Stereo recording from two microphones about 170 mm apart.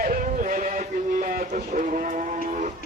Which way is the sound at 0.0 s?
55° right (ahead or behind).